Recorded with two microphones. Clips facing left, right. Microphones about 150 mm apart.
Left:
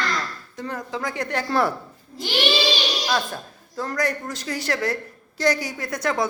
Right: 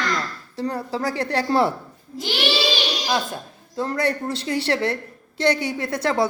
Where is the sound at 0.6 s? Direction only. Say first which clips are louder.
Right 4 dB; 35° right (ahead or behind).